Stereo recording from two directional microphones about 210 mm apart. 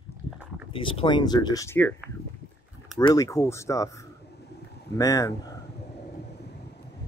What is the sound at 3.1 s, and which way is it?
Speech, 15° left (ahead or behind).